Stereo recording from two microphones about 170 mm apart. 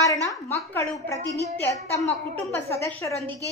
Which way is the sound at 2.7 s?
15° left (ahead or behind).